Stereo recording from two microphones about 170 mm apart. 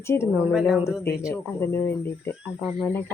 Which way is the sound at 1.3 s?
15° left (ahead or behind).